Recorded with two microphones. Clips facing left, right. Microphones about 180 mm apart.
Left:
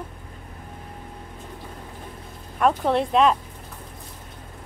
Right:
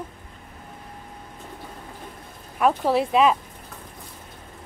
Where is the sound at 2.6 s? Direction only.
5° right (ahead or behind).